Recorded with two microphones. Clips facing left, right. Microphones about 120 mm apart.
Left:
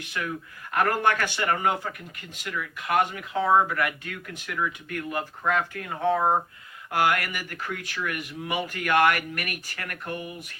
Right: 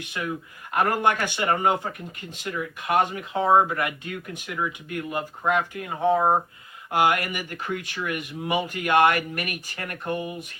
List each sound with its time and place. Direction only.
0.1 s speech: 20° right (ahead or behind)